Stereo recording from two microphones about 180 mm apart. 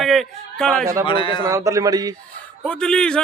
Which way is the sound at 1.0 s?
30° left (ahead or behind).